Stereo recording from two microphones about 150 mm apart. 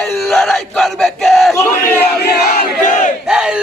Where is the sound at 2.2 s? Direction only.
90° left; by 3.1 s 55° left (ahead or behind).